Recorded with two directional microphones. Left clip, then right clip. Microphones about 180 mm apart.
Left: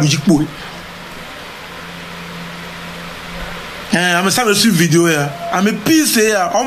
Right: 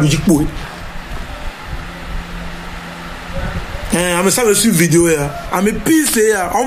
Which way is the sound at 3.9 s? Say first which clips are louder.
Left 1 dB; 15° left (ahead or behind).